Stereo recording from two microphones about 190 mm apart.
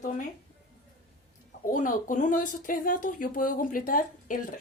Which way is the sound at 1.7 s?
45° left (ahead or behind).